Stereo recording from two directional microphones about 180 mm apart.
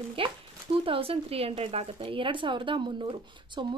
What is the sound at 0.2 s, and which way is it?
Speech, 30° right (ahead or behind).